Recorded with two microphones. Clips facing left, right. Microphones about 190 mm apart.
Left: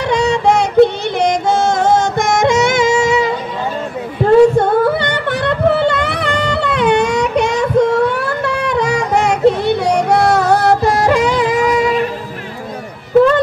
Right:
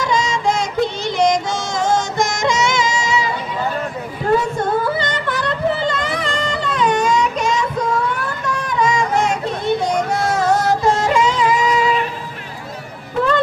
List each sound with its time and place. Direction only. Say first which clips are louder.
0.0 s yodeling: left 5 dB; 65° left (ahead or behind)
4.6 s singing: left 6 dB; 60° left (ahead or behind)